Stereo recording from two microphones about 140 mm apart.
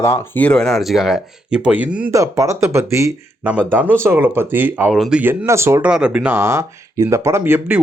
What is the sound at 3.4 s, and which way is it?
Speech, 10° right (ahead or behind).